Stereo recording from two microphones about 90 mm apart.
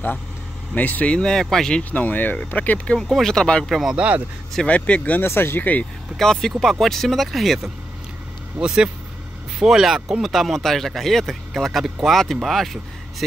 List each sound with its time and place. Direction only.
0.7 s speech: 20° left (ahead or behind)
3.0 s speech: 5° left (ahead or behind)
4.6 s speech: 15° left (ahead or behind)
5.2 s speech: 25° left (ahead or behind)
6.1 s speech: 5° left (ahead or behind)